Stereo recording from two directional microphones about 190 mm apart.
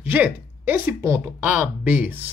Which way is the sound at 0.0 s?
10° right (ahead or behind).